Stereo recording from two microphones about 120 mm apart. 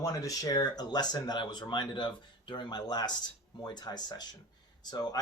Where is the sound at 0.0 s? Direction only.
30° left (ahead or behind).